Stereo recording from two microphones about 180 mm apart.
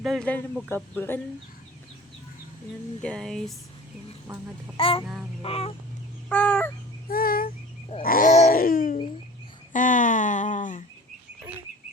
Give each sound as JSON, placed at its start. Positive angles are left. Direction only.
{"t": 0.0, "sound": "speech", "side_deg": 0}
{"t": 3.0, "sound": "speech", "side_deg": 5}
{"t": 4.8, "sound": "fowl", "side_deg": 30}
{"t": 6.2, "sound": "fowl", "side_deg": 5}
{"t": 7.1, "sound": "a sound", "side_deg": 55}
{"t": 8.0, "sound": "speech", "side_deg": 50}